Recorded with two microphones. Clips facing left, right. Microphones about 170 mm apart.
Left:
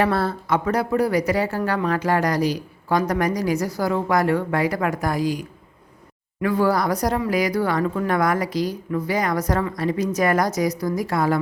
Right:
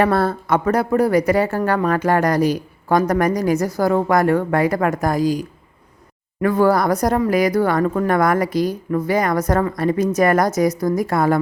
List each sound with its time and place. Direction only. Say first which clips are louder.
0.0 s speech: right 4 dB; 50° right (ahead or behind)